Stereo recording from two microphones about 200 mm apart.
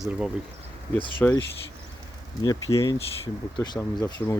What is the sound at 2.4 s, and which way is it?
Speech, 20° left (ahead or behind).